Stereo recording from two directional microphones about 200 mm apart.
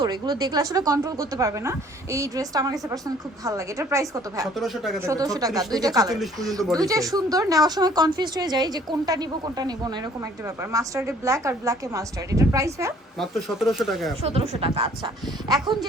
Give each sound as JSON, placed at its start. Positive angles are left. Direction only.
{"t": 0.0, "sound": "a woman's voice", "side_deg": -20}
{"t": 13.1, "sound": "speech", "side_deg": 0}
{"t": 14.3, "sound": "speech", "side_deg": -30}